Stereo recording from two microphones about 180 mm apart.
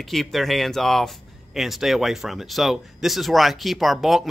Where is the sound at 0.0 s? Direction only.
Centre (ahead or behind).